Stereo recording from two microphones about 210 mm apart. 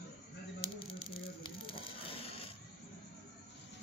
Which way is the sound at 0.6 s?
25° left (ahead or behind).